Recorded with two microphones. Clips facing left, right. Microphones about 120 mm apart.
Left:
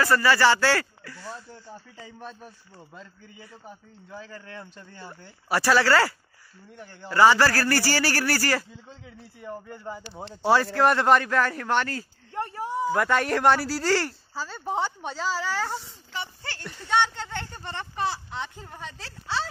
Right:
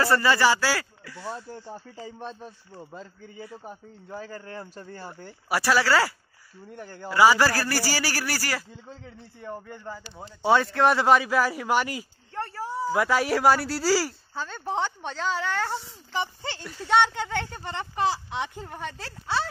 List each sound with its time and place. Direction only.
0.0 s speech: 25° right (ahead or behind); by 1.3 s 10° right (ahead or behind)
1.3 s speech: 35° right (ahead or behind)
5.5 s speech: 10° right (ahead or behind)
6.7 s speech: 45° right (ahead or behind)
7.1 s speech: 10° right (ahead or behind)
9.8 s speech: 15° left (ahead or behind)
10.4 s speech: centre (ahead or behind)
12.4 s speech: 20° left (ahead or behind)
12.9 s speech: 5° right (ahead or behind)
16.8 s speech: 15° right (ahead or behind)